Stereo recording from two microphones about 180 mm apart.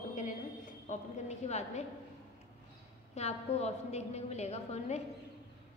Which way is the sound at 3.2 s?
35° left (ahead or behind).